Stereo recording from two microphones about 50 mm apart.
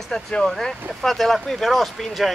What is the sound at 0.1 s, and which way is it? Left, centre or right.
Speech, centre.